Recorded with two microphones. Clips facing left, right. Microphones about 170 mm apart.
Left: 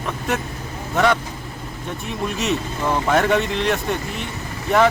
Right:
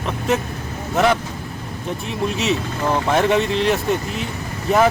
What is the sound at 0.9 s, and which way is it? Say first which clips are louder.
Speech: right 1 dB; 5° right (ahead or behind).